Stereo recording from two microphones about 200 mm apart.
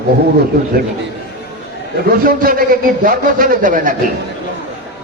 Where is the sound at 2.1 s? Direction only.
45° right (ahead or behind).